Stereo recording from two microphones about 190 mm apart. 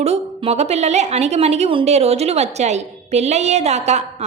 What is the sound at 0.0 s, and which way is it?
A woman's voice, 35° right (ahead or behind).